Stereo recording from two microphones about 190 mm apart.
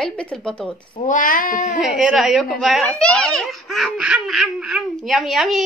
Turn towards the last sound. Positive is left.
turn(degrees=0)  # may be behind; listen again after turning